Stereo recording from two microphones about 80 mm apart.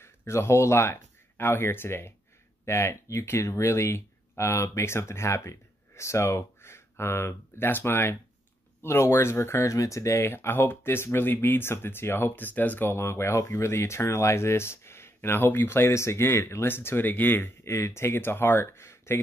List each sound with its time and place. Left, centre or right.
0.0 s speech: left